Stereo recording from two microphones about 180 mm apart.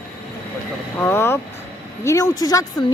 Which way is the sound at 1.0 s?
15° left (ahead or behind).